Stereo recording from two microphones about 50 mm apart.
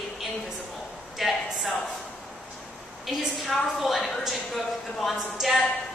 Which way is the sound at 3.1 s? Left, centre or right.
Centre.